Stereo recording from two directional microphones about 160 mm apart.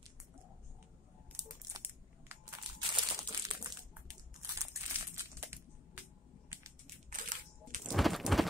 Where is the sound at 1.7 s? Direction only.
15° right (ahead or behind).